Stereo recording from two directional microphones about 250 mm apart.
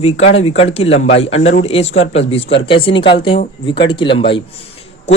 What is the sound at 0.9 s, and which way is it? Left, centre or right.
Speech, left.